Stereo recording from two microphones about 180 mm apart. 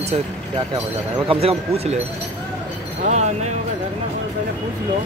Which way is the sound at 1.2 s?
35° right (ahead or behind).